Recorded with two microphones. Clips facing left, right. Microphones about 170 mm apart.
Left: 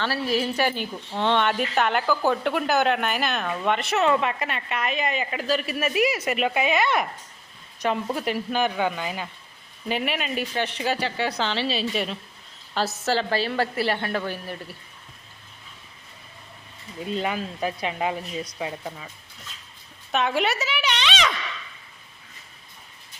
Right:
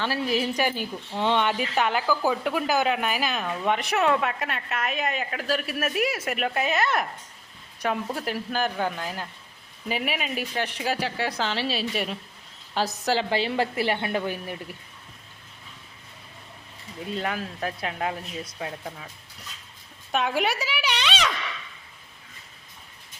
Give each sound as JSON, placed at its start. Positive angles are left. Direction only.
{"t": 0.0, "sound": "a woman's voice", "side_deg": -15}
{"t": 4.0, "sound": "a woman's voice", "side_deg": 0}
{"t": 17.2, "sound": "a woman's voice", "side_deg": 0}
{"t": 20.1, "sound": "a woman's voice", "side_deg": -10}